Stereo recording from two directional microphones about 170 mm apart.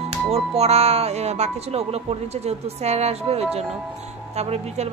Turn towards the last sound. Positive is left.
turn(degrees=-40)  # may be behind; listen again after turning